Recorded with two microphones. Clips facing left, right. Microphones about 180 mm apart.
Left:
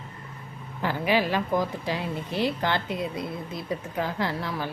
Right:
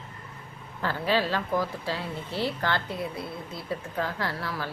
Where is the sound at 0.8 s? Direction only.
15° left (ahead or behind).